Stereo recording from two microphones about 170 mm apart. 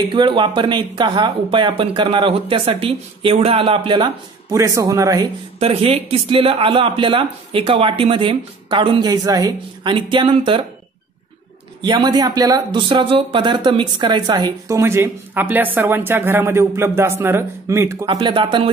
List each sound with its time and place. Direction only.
0.1 s speech: 30° right (ahead or behind)
5.6 s speech: 35° right (ahead or behind)
11.8 s speech: 25° right (ahead or behind)
18.0 s speech: 30° right (ahead or behind)